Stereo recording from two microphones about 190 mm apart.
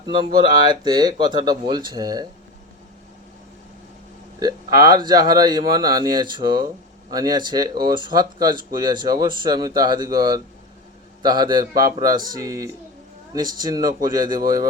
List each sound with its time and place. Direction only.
0.0 s speech: 25° right (ahead or behind)
4.4 s speech: 20° right (ahead or behind)